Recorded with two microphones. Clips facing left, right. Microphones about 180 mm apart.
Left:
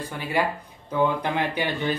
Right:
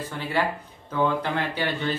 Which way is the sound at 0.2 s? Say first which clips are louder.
Left 1 dB; 10° left (ahead or behind).